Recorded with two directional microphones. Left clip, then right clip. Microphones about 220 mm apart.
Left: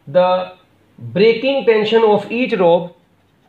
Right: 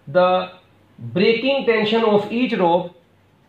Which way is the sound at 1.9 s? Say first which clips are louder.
Left 4 dB; 45° left (ahead or behind).